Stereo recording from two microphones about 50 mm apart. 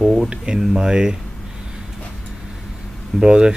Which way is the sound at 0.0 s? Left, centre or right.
Centre.